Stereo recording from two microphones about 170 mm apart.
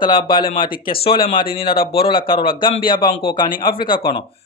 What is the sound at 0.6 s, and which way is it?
Speech, 55° left (ahead or behind).